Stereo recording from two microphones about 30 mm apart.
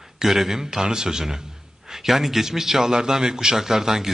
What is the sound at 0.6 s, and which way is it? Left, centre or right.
A man's voice, right.